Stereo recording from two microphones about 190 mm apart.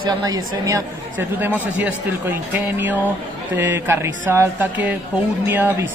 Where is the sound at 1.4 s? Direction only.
10° right (ahead or behind).